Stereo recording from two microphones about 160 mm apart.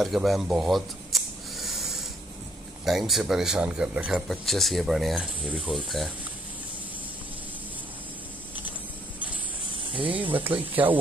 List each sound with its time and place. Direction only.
0.0 s a sound: centre (ahead or behind)
2.8 s speech: centre (ahead or behind)
9.9 s speech: 30° right (ahead or behind)
10.6 s speech: 10° right (ahead or behind)